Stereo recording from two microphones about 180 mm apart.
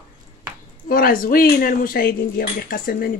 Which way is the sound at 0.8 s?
50° left (ahead or behind).